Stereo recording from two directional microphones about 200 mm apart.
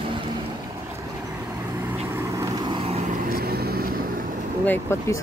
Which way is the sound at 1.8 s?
10° right (ahead or behind).